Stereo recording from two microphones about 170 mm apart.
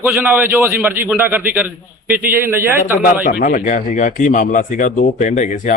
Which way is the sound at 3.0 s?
55° left (ahead or behind).